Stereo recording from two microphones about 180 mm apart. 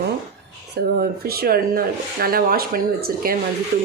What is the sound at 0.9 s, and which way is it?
Speech, 60° right (ahead or behind).